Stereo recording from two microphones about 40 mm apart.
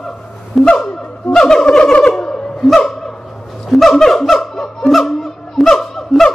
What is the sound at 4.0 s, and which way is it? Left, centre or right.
Music, centre.